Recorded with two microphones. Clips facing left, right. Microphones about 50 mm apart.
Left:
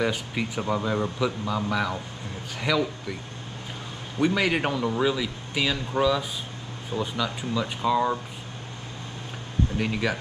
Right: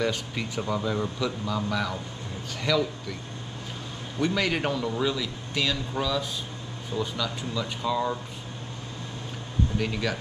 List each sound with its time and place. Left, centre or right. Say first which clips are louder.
0.0 s a man's voice: left 2 dB; centre
4.2 s a man's voice: left 3 dB; centre
9.8 s a man's voice: left 3 dB; centre